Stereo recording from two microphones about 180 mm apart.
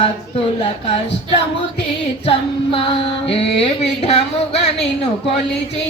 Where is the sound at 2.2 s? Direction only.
30° left (ahead or behind).